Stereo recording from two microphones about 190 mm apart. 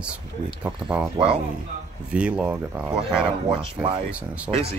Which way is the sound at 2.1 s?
5° right (ahead or behind).